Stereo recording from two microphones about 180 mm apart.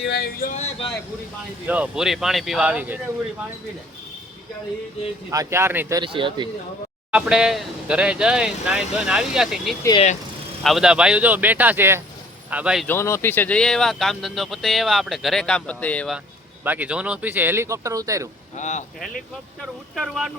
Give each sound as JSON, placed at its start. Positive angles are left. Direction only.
{"t": 0.0, "sound": "a sound", "side_deg": 60}
{"t": 1.6, "sound": "speech", "side_deg": -10}
{"t": 5.3, "sound": "speech", "side_deg": -15}
{"t": 6.0, "sound": "speech", "side_deg": -25}
{"t": 7.1, "sound": "speech", "side_deg": -5}
{"t": 12.9, "sound": "speech", "side_deg": 15}
{"t": 16.6, "sound": "speech", "side_deg": -10}
{"t": 18.5, "sound": "speech", "side_deg": 40}
{"t": 20.0, "sound": "speech", "side_deg": 0}